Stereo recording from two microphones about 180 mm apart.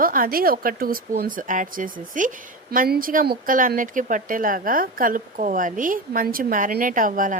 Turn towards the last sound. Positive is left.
turn(degrees=-50)  # may be behind; listen again after turning